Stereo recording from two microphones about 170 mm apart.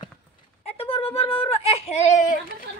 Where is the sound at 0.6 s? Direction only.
35° left (ahead or behind).